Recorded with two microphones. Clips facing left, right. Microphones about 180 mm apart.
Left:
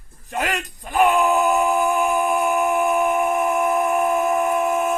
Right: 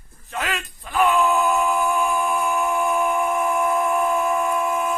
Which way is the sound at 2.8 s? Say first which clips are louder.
Left 2 dB; 45° left (ahead or behind).